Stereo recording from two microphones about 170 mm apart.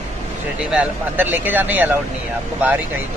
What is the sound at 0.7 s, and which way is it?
Speech, 10° right (ahead or behind).